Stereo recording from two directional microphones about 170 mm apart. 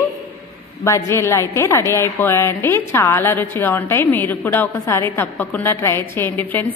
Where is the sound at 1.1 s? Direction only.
15° left (ahead or behind).